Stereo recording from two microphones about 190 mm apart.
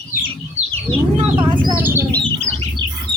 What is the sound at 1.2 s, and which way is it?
Bird, 25° right (ahead or behind).